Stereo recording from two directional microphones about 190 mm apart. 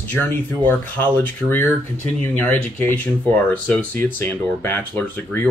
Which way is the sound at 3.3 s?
5° left (ahead or behind).